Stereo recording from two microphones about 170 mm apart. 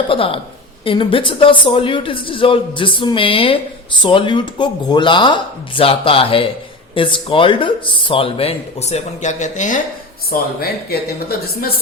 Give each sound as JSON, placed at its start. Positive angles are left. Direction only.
{"t": 0.1, "sound": "speech", "side_deg": 30}
{"t": 10.2, "sound": "speech", "side_deg": 65}